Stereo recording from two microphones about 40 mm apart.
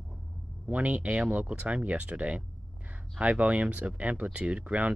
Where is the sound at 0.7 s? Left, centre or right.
Right.